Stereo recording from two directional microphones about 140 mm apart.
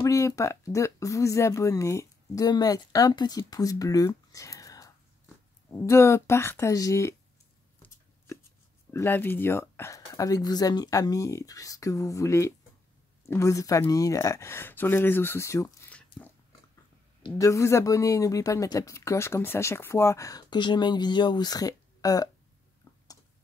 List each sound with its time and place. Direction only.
0.0 s speech: 20° left (ahead or behind)
7.8 s chopping: 10° left (ahead or behind)
8.9 s speech: 15° left (ahead or behind)
15.9 s a sound: 10° left (ahead or behind)
17.4 s speech: 20° left (ahead or behind)
22.8 s a sound: 20° left (ahead or behind)